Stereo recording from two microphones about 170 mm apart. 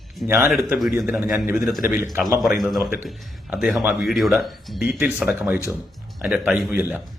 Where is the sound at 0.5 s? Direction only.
Centre (ahead or behind).